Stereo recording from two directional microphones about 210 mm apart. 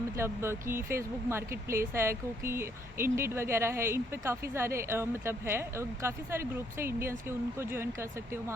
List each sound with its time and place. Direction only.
0.2 s speech: 10° right (ahead or behind)